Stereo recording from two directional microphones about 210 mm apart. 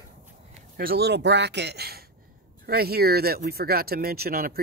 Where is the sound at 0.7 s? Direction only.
45° right (ahead or behind).